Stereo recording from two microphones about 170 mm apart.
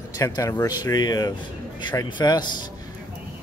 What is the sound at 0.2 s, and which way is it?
Speech, 20° left (ahead or behind).